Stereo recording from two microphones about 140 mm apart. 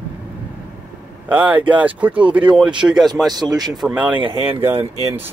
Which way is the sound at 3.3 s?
30° right (ahead or behind).